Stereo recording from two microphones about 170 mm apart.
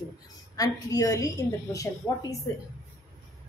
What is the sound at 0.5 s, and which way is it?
A woman's voice, 20° left (ahead or behind).